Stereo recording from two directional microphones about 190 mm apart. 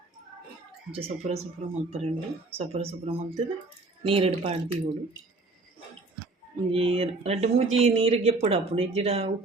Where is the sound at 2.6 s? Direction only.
30° right (ahead or behind).